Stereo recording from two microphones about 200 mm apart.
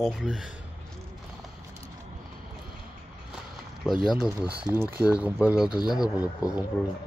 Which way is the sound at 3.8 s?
Centre (ahead or behind).